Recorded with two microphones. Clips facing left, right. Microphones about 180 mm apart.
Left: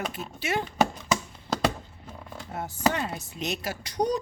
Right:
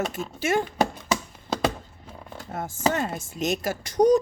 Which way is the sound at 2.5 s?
45° right (ahead or behind).